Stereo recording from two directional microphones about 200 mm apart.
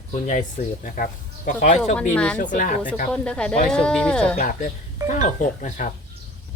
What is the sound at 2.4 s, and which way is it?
Speech, 40° left (ahead or behind).